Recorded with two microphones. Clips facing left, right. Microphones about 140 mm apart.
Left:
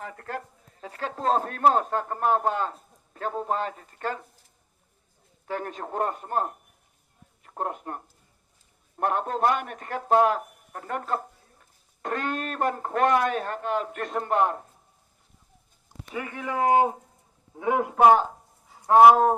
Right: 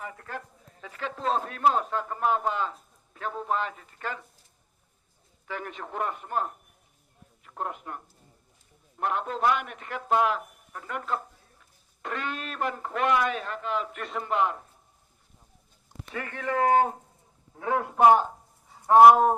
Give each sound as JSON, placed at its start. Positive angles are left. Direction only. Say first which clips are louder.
{"t": 0.8, "sound": "speech", "louder": "left 3 dB", "side_deg": 40}
{"t": 5.5, "sound": "a man's voice", "louder": "left 4 dB", "side_deg": 40}
{"t": 16.1, "sound": "speech", "louder": "right 1 dB", "side_deg": 10}
{"t": 18.7, "sound": "speech", "louder": "even", "side_deg": 0}